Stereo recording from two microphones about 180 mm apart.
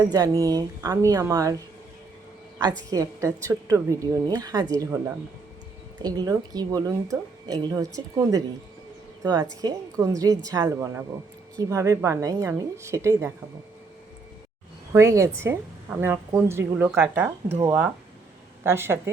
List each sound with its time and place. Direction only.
0.0 s speech: 20° right (ahead or behind)
2.9 s a woman's voice: 15° right (ahead or behind)
14.9 s a woman's voice: 15° right (ahead or behind)